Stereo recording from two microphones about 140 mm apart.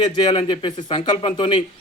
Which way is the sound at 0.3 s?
35° left (ahead or behind).